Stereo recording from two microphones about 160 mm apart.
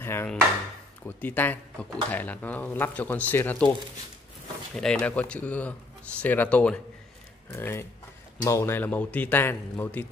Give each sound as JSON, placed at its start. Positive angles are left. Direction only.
{"t": 0.0, "sound": "dishes", "side_deg": 15}
{"t": 1.0, "sound": "speech", "side_deg": 10}
{"t": 4.7, "sound": "speech", "side_deg": 5}